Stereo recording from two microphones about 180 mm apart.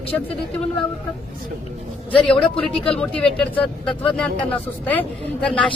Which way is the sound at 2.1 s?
5° left (ahead or behind).